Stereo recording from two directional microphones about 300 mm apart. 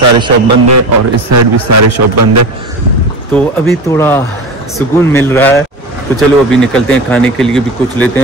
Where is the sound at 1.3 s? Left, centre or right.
Right.